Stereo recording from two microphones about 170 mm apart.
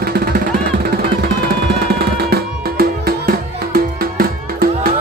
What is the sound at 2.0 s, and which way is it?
Music, 65° right (ahead or behind).